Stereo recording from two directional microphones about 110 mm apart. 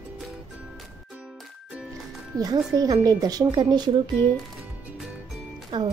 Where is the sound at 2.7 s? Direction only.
35° right (ahead or behind).